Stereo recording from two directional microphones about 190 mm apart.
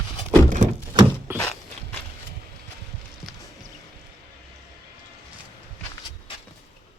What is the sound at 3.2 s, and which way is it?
Music, centre (ahead or behind).